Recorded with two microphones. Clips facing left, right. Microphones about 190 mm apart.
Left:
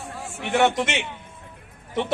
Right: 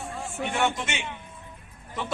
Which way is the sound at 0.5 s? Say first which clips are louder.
Left 8 dB; 75° left (ahead or behind).